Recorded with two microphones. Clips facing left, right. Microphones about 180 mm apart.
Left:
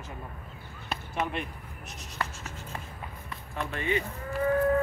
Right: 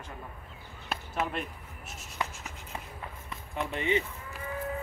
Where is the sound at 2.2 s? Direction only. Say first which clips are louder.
Left 1 dB; 10° right (ahead or behind).